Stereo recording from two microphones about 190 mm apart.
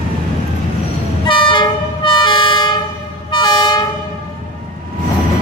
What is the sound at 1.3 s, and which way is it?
Train, 25° left (ahead or behind).